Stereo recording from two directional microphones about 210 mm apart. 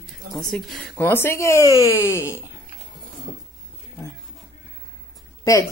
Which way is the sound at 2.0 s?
15° left (ahead or behind).